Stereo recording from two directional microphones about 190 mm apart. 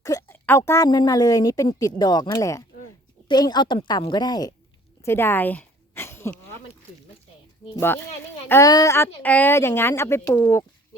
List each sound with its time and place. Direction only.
0.0 s a woman's voice: 15° left (ahead or behind)
5.0 s a sound: 10° left (ahead or behind)
7.8 s speech: 10° left (ahead or behind)